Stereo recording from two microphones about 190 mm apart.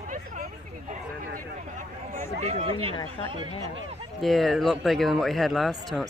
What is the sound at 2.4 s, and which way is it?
Speech, 30° right (ahead or behind).